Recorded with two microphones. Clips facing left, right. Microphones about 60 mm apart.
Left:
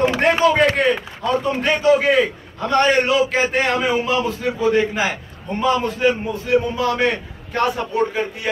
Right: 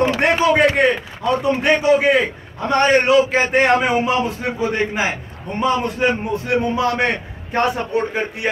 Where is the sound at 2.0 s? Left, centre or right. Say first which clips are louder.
Even; right.